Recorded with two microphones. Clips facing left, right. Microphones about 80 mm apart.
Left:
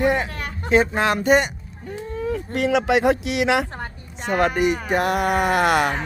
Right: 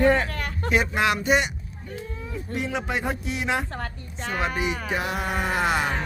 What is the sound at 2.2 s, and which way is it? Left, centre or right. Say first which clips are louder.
Speech: left 9 dB; left.